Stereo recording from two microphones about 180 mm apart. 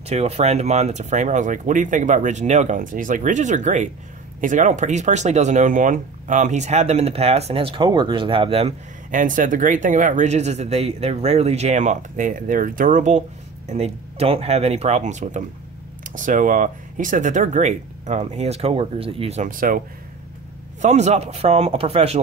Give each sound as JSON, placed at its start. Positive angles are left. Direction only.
{"t": 0.1, "sound": "speech", "side_deg": -35}
{"t": 9.1, "sound": "speech", "side_deg": -45}
{"t": 20.8, "sound": "speech", "side_deg": -40}